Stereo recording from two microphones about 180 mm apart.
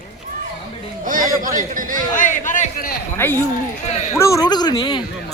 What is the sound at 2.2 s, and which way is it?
Speech, 45° left (ahead or behind).